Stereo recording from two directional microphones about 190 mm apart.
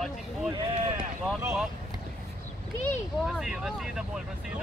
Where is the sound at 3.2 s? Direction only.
5° right (ahead or behind).